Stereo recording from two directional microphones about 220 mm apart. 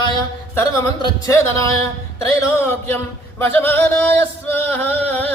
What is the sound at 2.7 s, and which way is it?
Speech, 10° left (ahead or behind).